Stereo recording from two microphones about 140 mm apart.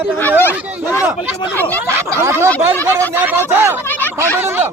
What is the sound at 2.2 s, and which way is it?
Speech, 15° right (ahead or behind).